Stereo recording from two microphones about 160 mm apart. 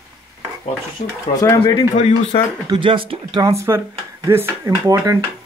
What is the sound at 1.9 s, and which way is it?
Speech, 40° left (ahead or behind).